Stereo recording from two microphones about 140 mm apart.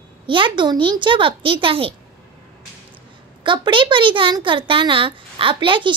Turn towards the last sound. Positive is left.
turn(degrees=-35)  # may be behind; listen again after turning